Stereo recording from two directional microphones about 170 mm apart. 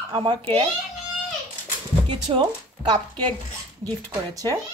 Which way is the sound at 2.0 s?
30° right (ahead or behind).